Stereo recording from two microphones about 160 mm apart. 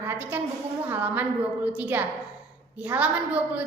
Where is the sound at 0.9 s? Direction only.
10° right (ahead or behind).